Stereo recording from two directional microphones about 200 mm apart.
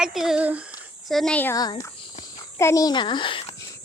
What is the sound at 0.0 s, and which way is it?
Speech, centre (ahead or behind).